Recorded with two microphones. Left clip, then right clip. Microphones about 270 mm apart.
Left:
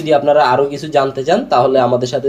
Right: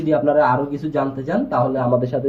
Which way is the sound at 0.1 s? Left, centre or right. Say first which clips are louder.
Left 5 dB; centre.